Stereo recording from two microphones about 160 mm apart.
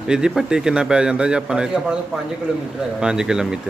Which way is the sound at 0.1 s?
5° right (ahead or behind).